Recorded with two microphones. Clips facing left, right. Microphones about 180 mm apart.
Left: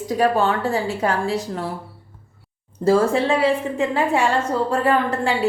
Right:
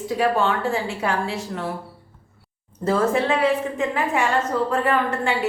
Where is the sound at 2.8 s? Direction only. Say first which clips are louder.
Left 3 dB; 30° left (ahead or behind).